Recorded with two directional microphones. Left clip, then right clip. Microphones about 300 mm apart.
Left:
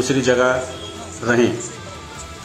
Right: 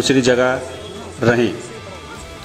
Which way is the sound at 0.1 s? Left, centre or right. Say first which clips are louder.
Right 1 dB; centre.